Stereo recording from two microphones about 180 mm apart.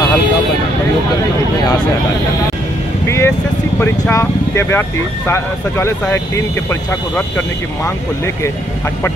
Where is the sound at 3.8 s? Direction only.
10° left (ahead or behind).